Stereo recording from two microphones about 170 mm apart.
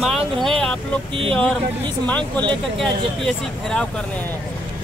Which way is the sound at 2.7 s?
5° left (ahead or behind).